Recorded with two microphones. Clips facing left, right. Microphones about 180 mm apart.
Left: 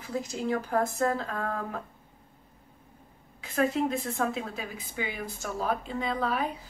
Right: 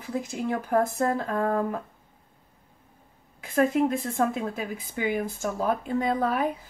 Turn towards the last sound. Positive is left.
turn(degrees=-50)  # may be behind; listen again after turning